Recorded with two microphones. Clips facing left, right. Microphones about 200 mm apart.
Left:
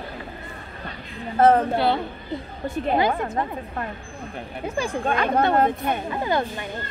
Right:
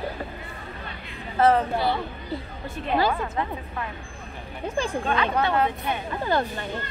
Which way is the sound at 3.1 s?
40° left (ahead or behind).